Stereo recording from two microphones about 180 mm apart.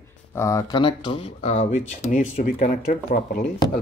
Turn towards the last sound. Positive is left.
turn(degrees=50)  # may be behind; listen again after turning